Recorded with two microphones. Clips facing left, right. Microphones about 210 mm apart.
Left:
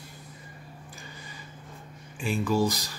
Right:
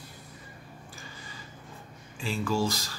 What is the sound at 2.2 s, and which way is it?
Speech, 15° left (ahead or behind).